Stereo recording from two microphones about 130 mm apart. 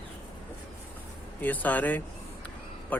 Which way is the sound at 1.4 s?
15° left (ahead or behind).